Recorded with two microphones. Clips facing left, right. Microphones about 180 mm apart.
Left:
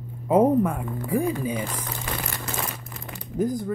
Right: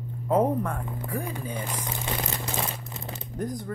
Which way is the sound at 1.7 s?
20° right (ahead or behind).